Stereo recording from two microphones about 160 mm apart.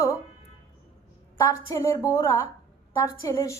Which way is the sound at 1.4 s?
20° left (ahead or behind).